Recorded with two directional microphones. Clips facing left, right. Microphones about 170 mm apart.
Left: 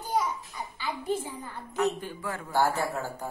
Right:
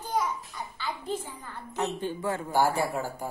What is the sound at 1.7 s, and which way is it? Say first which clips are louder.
Speech: left 2 dB; 30° right (ahead or behind).